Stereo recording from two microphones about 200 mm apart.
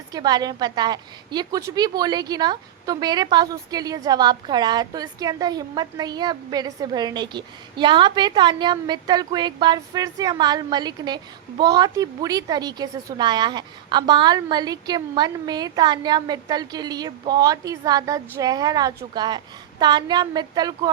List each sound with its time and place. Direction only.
0.1 s a woman's voice: 20° right (ahead or behind)